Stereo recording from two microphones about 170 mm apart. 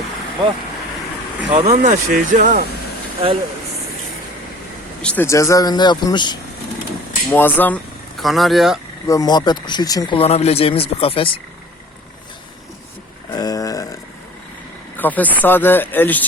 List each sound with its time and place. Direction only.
1.5 s speech: 40° right (ahead or behind)
3.2 s speech: 35° right (ahead or behind)
5.0 s speech: 10° left (ahead or behind)
7.3 s speech: 10° left (ahead or behind)
8.2 s speech: centre (ahead or behind)
9.0 s speech: 20° left (ahead or behind)
13.3 s a sound: 25° left (ahead or behind)
14.9 s speech: 10° left (ahead or behind)